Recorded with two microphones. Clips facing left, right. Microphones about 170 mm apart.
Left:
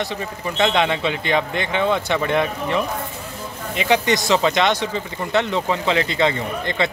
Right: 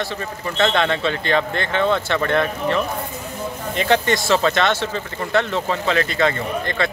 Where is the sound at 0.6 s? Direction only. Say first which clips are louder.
Even; 15° left (ahead or behind).